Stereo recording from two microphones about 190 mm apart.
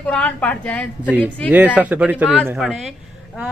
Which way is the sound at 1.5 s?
5° right (ahead or behind).